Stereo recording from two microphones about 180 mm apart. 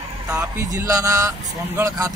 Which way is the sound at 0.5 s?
20° right (ahead or behind).